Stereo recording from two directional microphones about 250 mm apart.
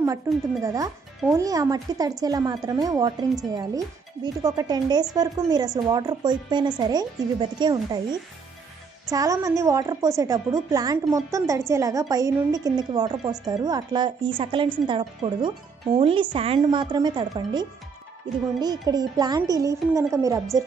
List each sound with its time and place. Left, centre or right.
0.3 s a woman's voice: centre